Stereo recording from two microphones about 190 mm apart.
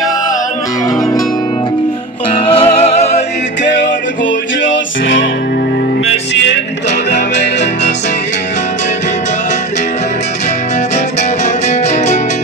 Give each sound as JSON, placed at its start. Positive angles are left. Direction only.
{"t": 2.3, "sound": "music", "side_deg": 30}
{"t": 3.6, "sound": "music", "side_deg": 65}
{"t": 7.1, "sound": "music", "side_deg": 65}
{"t": 11.4, "sound": "music", "side_deg": 35}